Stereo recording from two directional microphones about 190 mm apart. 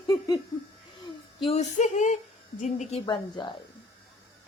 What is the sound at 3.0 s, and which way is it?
Speech, 25° left (ahead or behind).